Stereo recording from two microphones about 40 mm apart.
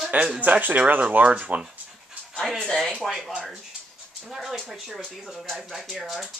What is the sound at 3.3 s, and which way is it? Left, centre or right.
Speech, centre.